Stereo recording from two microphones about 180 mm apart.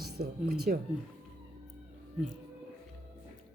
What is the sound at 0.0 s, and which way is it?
Speech, 60° right (ahead or behind).